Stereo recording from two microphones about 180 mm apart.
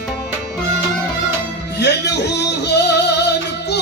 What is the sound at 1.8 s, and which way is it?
Music, 70° left (ahead or behind).